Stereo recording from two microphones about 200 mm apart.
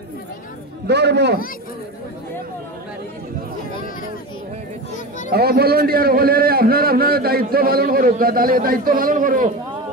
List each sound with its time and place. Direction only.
0.8 s a man's voice: 55° right (ahead or behind)
5.3 s a man's voice: 50° right (ahead or behind)